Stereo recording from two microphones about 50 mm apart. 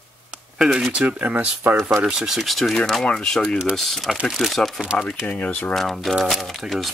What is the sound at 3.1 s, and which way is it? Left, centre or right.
Speech, centre.